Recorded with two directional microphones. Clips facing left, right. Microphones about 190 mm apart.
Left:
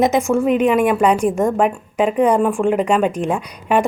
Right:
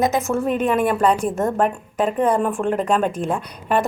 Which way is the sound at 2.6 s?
15° left (ahead or behind).